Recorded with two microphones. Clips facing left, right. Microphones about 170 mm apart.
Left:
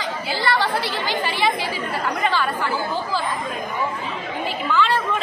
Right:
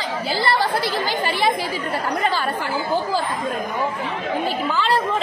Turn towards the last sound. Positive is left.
turn(degrees=-35)  # may be behind; listen again after turning